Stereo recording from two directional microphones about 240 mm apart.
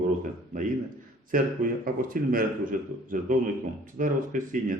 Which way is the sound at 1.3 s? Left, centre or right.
Right.